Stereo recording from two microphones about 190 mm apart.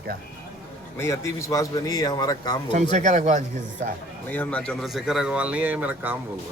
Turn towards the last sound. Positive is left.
turn(degrees=-10)  # may be behind; listen again after turning